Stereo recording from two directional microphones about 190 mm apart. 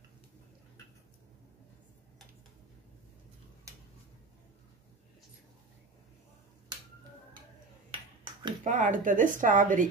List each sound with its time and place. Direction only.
7.9 s finger snapping: 25° right (ahead or behind)
8.6 s speech: 45° right (ahead or behind)